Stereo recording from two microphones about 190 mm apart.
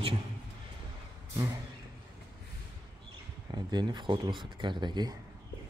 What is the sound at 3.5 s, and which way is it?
A man's voice, 25° right (ahead or behind).